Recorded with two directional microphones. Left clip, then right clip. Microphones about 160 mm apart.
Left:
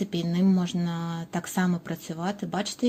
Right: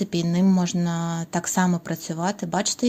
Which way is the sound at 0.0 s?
25° right (ahead or behind).